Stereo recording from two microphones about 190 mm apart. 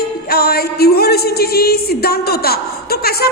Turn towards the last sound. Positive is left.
turn(degrees=55)  # may be behind; listen again after turning